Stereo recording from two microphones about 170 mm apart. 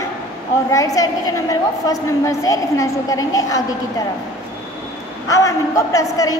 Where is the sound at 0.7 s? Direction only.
20° left (ahead or behind).